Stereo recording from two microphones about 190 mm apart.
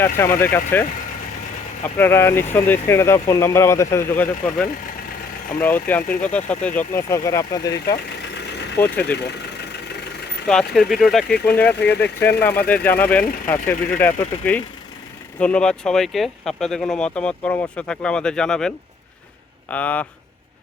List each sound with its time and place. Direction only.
0.0 s speech: 10° left (ahead or behind)
8.8 s speech: 10° left (ahead or behind)
10.5 s speech: centre (ahead or behind)
15.4 s speech: 5° left (ahead or behind)
19.7 s speech: 10° left (ahead or behind)